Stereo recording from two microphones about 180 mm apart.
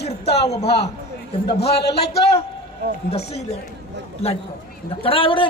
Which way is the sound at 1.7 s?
65° left (ahead or behind).